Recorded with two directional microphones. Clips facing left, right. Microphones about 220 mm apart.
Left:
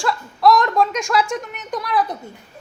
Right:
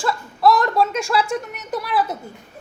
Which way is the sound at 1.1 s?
35° right (ahead or behind).